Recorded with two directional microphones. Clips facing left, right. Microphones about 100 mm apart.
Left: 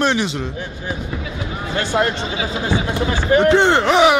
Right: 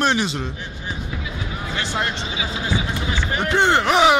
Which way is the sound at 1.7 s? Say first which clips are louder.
Left 7 dB; 40° left (ahead or behind).